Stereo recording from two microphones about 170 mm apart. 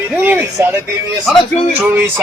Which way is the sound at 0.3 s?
10° right (ahead or behind).